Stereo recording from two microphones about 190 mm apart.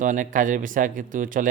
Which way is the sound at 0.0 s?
45° right (ahead or behind).